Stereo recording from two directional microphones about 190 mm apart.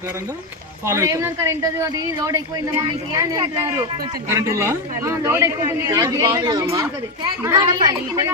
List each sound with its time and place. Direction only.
0.9 s a man's voice: 15° right (ahead or behind)